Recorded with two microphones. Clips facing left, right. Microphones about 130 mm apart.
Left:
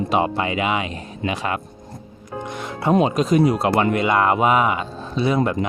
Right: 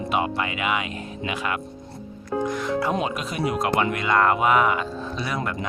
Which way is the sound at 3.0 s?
35° left (ahead or behind).